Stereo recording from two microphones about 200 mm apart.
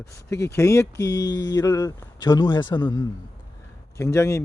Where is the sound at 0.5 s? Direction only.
15° left (ahead or behind).